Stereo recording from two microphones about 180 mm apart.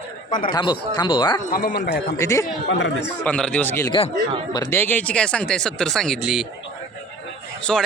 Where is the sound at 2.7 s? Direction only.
90° left.